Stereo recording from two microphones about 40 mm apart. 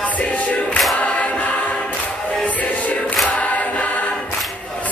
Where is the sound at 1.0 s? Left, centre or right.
Left.